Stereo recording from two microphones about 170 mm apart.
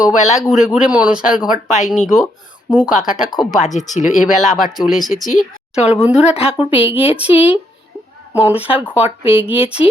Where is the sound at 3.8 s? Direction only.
40° left (ahead or behind).